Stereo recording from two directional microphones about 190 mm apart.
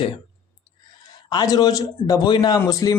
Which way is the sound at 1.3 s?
20° left (ahead or behind).